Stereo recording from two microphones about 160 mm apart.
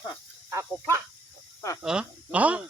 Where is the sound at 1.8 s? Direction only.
5° right (ahead or behind).